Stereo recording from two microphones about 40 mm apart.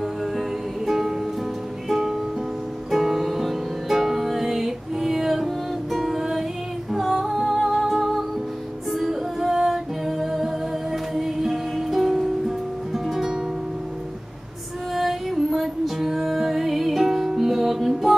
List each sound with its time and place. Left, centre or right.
0.2 s music: centre
6.9 s female singing: centre
7.6 s music: centre
15.0 s music: centre